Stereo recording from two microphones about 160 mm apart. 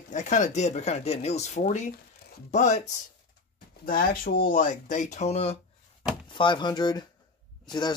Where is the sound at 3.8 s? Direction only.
65° left (ahead or behind); by 5.5 s 40° left (ahead or behind).